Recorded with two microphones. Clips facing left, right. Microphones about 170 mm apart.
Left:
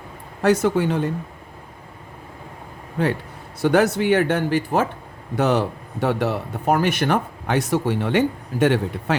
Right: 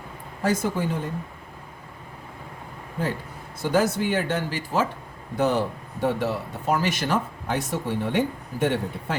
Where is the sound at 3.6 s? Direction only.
70° left (ahead or behind).